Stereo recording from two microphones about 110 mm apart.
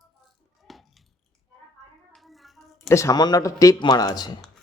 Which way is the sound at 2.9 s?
30° left (ahead or behind).